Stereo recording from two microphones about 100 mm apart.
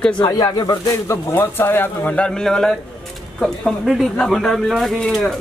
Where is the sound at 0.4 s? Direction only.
40° left (ahead or behind).